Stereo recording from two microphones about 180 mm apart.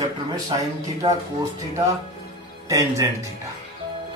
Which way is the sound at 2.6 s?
15° right (ahead or behind).